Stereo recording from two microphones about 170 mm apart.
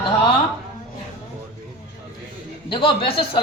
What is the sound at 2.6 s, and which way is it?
Speech, 30° left (ahead or behind).